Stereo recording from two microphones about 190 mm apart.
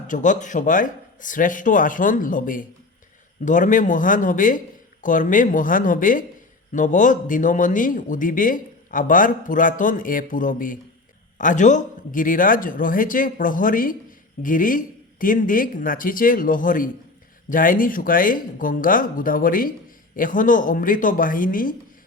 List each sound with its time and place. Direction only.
0.1 s speech: 40° left (ahead or behind)